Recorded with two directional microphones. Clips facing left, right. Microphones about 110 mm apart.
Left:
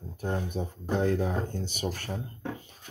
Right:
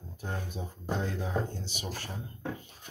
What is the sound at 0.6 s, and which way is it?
Speech, 65° left (ahead or behind).